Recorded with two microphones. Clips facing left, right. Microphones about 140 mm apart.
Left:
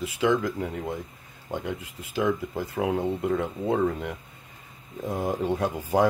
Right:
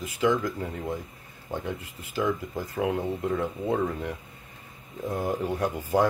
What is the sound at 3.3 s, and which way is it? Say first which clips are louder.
Speech: left 2 dB; centre (ahead or behind).